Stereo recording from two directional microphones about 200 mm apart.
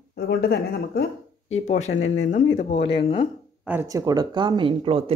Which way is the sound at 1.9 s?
70° left (ahead or behind).